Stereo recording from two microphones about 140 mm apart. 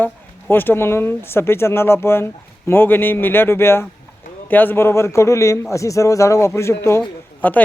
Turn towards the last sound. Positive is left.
turn(degrees=10)  # may be behind; listen again after turning